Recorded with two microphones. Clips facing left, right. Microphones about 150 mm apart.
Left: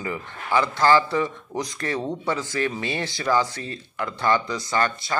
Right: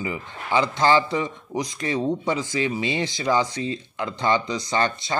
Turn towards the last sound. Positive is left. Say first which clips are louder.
# even
turn(degrees=-20)  # may be behind; listen again after turning